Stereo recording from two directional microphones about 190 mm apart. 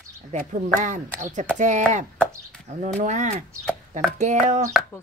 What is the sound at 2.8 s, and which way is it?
Speech, 40° right (ahead or behind).